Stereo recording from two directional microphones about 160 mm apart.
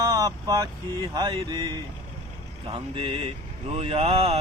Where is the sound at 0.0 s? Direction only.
20° right (ahead or behind).